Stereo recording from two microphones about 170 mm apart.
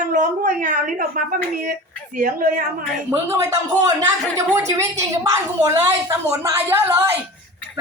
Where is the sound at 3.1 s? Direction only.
15° right (ahead or behind).